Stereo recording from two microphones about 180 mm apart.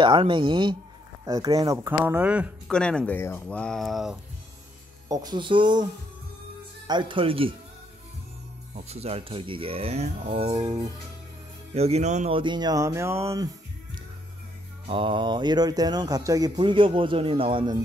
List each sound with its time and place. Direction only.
0.0 s speech: 30° right (ahead or behind); by 2.5 s 5° right (ahead or behind)
2.7 s speech: 5° left (ahead or behind)
5.0 s speech: 20° right (ahead or behind)
6.9 s speech: 25° right (ahead or behind)
8.7 s speech: 35° right (ahead or behind)
11.7 s speech: 35° right (ahead or behind); by 13.5 s 15° right (ahead or behind)
14.9 s speech: 30° right (ahead or behind)